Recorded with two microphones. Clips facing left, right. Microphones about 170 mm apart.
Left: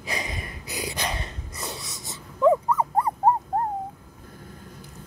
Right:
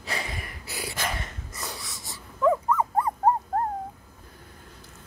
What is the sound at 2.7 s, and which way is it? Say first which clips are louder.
Dog: left 1 dB; 35° left (ahead or behind).